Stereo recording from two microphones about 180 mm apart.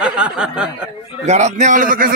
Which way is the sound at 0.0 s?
5° right (ahead or behind).